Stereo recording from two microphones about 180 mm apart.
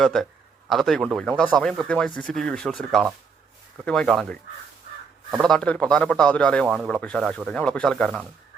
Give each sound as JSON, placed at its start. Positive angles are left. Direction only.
{"t": 0.0, "sound": "speech", "side_deg": 0}
{"t": 5.4, "sound": "speech", "side_deg": 5}